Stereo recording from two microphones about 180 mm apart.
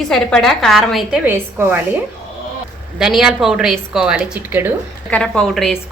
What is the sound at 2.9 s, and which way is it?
A woman's voice, 5° right (ahead or behind).